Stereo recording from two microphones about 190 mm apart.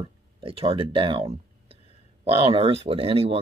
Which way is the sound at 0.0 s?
30° right (ahead or behind).